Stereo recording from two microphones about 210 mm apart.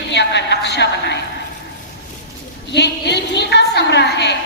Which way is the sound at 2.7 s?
55° left (ahead or behind).